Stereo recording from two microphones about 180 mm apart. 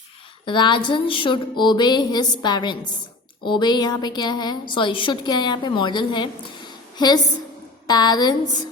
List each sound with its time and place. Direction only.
0.4 s a woman's voice: 25° left (ahead or behind)